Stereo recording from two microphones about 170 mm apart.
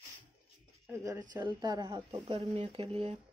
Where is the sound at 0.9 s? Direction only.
20° right (ahead or behind); by 3.1 s 35° right (ahead or behind).